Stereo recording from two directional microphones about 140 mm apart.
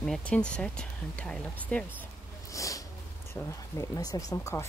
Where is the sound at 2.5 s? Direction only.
25° left (ahead or behind).